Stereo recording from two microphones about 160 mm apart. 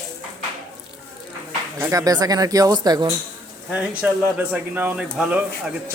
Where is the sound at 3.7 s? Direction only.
10° right (ahead or behind).